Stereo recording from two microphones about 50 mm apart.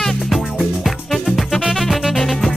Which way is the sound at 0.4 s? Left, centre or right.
Centre.